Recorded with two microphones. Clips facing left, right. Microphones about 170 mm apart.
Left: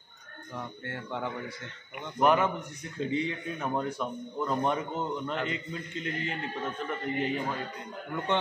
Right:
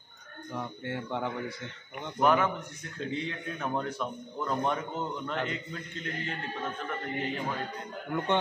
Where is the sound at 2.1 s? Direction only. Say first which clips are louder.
Left 1 dB; 5° left (ahead or behind).